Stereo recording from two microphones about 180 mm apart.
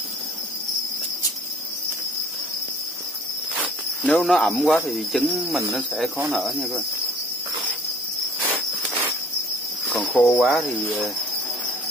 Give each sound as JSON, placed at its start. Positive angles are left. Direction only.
{"t": 4.0, "sound": "speech", "side_deg": 5}
{"t": 9.9, "sound": "speech", "side_deg": 0}